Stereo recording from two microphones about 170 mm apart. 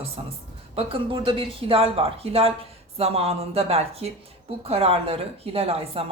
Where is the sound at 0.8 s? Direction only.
35° right (ahead or behind).